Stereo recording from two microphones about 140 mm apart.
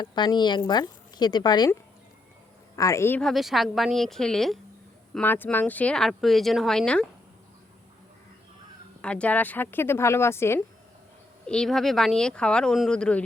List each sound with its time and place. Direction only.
0.0 s a woman's voice: 30° left (ahead or behind)
2.7 s a woman's voice: 20° left (ahead or behind)
3.2 s speech: centre (ahead or behind)
5.2 s speech: 15° left (ahead or behind)
9.0 s speech: 10° left (ahead or behind)
11.4 s speech: 5° left (ahead or behind)